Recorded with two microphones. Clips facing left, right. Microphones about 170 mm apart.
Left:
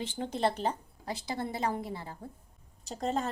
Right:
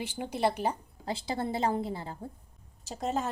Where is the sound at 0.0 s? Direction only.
10° right (ahead or behind).